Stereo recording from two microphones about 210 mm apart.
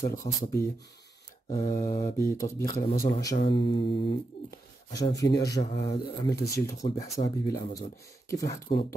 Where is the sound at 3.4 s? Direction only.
60° left (ahead or behind).